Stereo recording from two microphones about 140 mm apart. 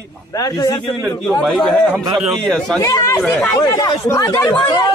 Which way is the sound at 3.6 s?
25° left (ahead or behind).